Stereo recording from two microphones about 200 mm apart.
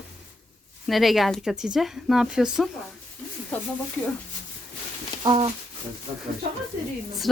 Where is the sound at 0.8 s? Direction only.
Centre (ahead or behind).